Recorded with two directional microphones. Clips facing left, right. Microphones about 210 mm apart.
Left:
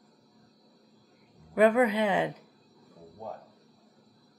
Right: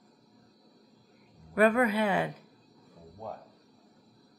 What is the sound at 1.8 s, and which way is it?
Speech, 20° left (ahead or behind).